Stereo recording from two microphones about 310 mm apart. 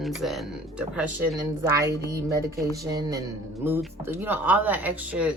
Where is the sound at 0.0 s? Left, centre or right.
Centre.